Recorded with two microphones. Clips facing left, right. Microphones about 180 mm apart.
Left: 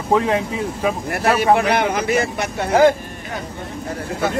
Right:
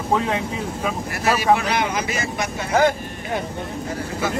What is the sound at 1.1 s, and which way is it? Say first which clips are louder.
Speech: left 2 dB; 55° left (ahead or behind).